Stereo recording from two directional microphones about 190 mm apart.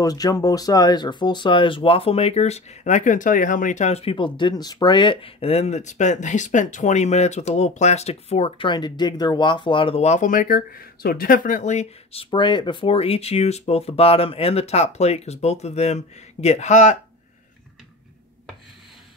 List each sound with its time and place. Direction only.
0.0 s speech: 20° left (ahead or behind); by 17.0 s 40° left (ahead or behind)